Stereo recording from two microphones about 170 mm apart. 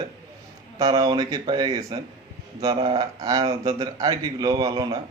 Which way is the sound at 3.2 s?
20° right (ahead or behind).